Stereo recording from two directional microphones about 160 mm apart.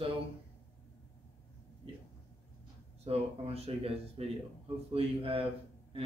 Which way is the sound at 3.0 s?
40° right (ahead or behind).